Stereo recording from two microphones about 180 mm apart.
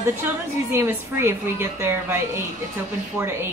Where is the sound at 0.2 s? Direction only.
10° right (ahead or behind).